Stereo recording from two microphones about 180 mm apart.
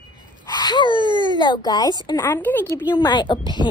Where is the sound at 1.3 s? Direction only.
25° left (ahead or behind).